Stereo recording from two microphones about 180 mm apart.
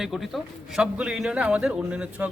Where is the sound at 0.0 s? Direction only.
Centre (ahead or behind).